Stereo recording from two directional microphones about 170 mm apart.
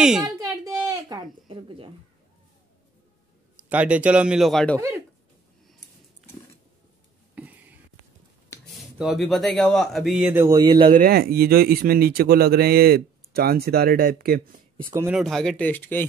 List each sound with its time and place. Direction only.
0.0 s speech: 5° right (ahead or behind)
0.8 s a sound: 25° right (ahead or behind)
1.5 s speech: 30° right (ahead or behind)
3.6 s speech: 10° right (ahead or behind)
4.7 s speech: 15° right (ahead or behind)
7.3 s a sound: 10° right (ahead or behind)
9.2 s speech: centre (ahead or behind); by 10.9 s 20° right (ahead or behind)
10.9 s speech: 55° right (ahead or behind)
15.1 s speech: centre (ahead or behind)